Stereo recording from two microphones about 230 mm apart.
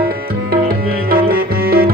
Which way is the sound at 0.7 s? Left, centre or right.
Right.